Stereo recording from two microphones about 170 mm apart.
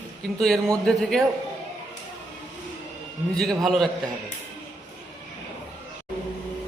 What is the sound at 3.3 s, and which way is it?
Speech, centre (ahead or behind).